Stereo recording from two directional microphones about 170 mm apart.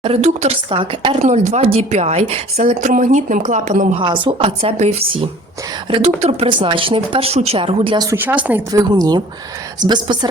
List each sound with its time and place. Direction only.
0.0 s speech: 35° right (ahead or behind)
2.8 s speech: 50° right (ahead or behind)
4.0 s speech: 30° right (ahead or behind)
8.1 s speech: 10° right (ahead or behind)
8.7 s a woman's voice: 20° right (ahead or behind)